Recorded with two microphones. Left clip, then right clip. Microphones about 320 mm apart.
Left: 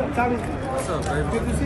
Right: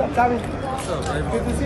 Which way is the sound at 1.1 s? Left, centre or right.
Centre.